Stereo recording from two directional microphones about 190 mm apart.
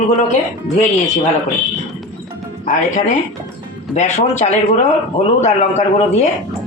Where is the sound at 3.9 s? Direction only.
40° left (ahead or behind).